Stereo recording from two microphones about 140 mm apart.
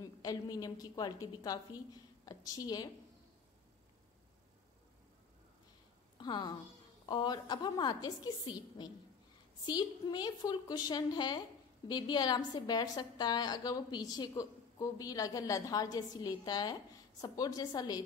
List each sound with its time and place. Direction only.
0.0 s a woman's voice: 25° left (ahead or behind)
6.1 s a woman's voice: 30° left (ahead or behind)